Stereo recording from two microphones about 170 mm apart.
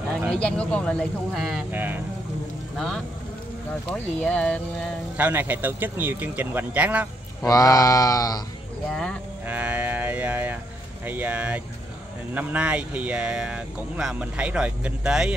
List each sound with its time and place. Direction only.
0.3 s speech: 5° left (ahead or behind)
1.7 s speech: 10° right (ahead or behind)
3.9 s speech: 5° left (ahead or behind)
5.1 s speech: 10° right (ahead or behind)
7.4 s a sound: 20° left (ahead or behind)
9.5 s livestock: 10° right (ahead or behind)
11.1 s speech: 10° right (ahead or behind)